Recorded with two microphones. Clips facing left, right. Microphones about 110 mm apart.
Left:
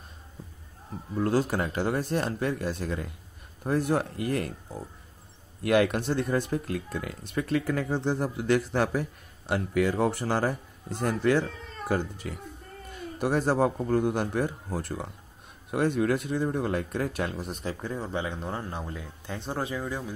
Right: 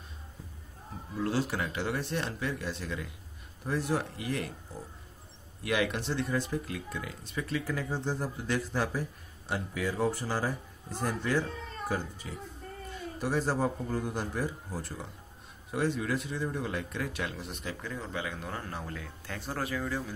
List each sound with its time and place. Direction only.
1.1 s speech: 45° left (ahead or behind)
5.6 s speech: 50° left (ahead or behind); by 20.2 s 15° left (ahead or behind)